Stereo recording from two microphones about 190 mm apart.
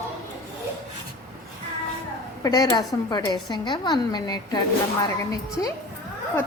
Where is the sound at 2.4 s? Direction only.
20° left (ahead or behind).